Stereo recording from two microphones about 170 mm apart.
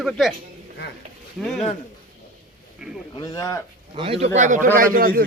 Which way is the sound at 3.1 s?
20° left (ahead or behind).